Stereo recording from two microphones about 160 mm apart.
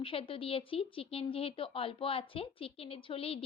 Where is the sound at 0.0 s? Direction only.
35° left (ahead or behind).